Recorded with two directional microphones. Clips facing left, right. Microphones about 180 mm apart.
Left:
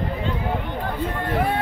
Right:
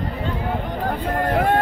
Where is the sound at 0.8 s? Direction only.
45° right (ahead or behind).